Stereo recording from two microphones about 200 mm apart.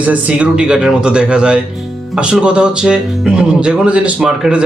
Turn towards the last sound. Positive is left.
turn(degrees=-5)  # may be behind; listen again after turning